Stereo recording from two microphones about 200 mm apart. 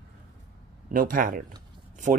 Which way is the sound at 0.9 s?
45° right (ahead or behind).